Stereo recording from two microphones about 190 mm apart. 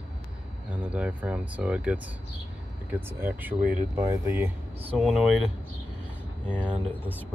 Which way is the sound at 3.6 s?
45° right (ahead or behind).